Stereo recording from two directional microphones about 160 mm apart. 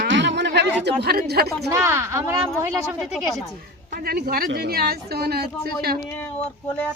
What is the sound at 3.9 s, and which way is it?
A man's voice, 70° right (ahead or behind).